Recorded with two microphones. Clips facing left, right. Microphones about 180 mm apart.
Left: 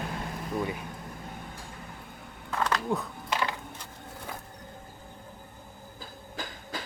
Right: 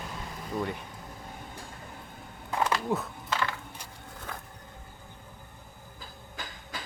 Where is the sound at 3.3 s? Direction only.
15° left (ahead or behind).